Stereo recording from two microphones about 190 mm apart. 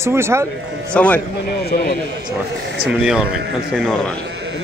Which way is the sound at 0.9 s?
5° left (ahead or behind).